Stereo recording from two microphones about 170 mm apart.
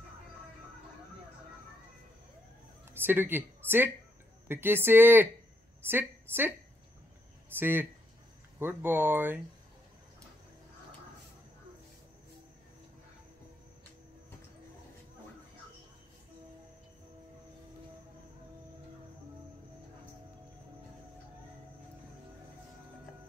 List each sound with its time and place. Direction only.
2.9 s a woman's voice: 10° right (ahead or behind)
7.5 s speech: 10° right (ahead or behind)